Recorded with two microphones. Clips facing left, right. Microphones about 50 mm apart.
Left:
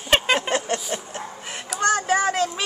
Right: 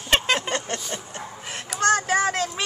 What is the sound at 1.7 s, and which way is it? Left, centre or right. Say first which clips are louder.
Speech: even; centre.